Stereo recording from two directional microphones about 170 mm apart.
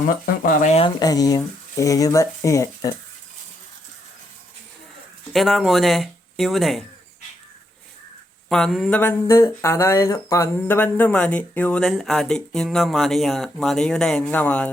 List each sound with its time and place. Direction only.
0.4 s speech: 45° left (ahead or behind)
0.9 s speech: 25° left (ahead or behind)
5.3 s speech: centre (ahead or behind)
8.4 s speech: centre (ahead or behind)